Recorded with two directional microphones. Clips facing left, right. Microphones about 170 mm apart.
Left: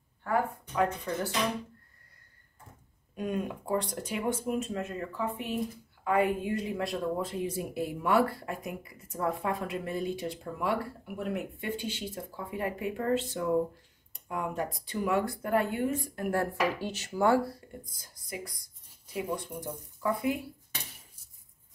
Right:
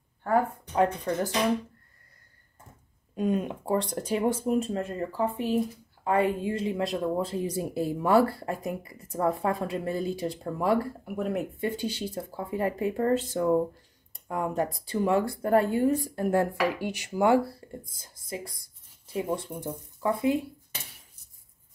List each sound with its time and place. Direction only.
3.2 s speech: 25° right (ahead or behind)
16.3 s speech: 15° right (ahead or behind)
17.6 s a sound: 30° right (ahead or behind)
17.9 s speech: 25° right (ahead or behind)